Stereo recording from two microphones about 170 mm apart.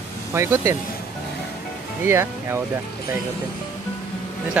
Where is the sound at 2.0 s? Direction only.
15° right (ahead or behind).